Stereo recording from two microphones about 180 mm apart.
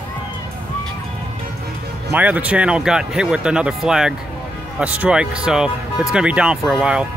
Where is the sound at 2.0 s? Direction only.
10° right (ahead or behind).